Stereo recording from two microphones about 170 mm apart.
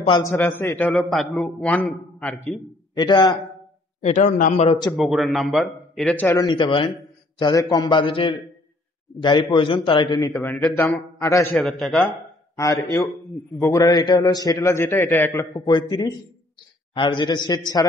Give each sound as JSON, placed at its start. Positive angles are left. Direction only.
{"t": 0.2, "sound": "a man's voice", "side_deg": 15}
{"t": 3.0, "sound": "a man's voice", "side_deg": 25}
{"t": 4.0, "sound": "a man's voice", "side_deg": 45}
{"t": 4.9, "sound": "speech", "side_deg": 0}
{"t": 6.2, "sound": "a man's voice", "side_deg": 25}
{"t": 10.4, "sound": "a man's voice", "side_deg": 15}
{"t": 11.5, "sound": "speech", "side_deg": 0}
{"t": 12.5, "sound": "a man's voice", "side_deg": 20}